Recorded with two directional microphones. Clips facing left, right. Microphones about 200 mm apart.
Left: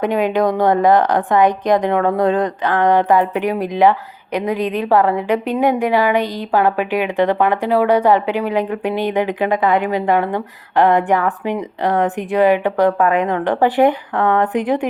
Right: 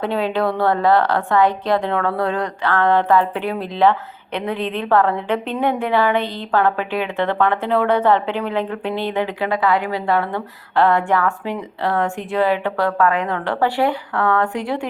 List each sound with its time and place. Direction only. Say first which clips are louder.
0.0 s a woman's voice: left 4 dB; 15° left (ahead or behind)